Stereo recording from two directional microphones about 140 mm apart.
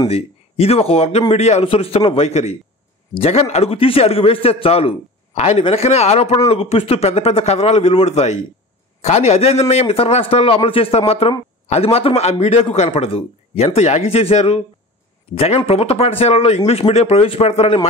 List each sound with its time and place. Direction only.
0.1 s a man's voice: 45° left (ahead or behind)